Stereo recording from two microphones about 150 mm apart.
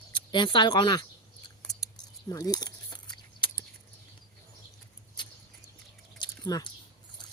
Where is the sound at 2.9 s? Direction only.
30° left (ahead or behind).